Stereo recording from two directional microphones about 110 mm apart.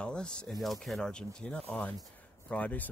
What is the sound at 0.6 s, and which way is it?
Speech, centre (ahead or behind).